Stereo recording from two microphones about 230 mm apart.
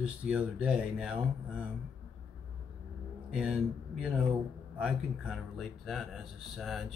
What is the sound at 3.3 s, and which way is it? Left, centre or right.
A man's voice, centre.